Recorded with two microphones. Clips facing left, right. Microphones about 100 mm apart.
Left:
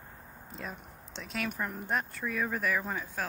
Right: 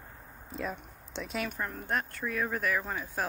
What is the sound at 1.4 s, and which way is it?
Speech, 5° left (ahead or behind).